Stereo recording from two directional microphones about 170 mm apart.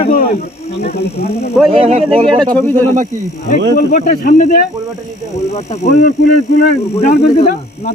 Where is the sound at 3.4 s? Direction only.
50° left (ahead or behind).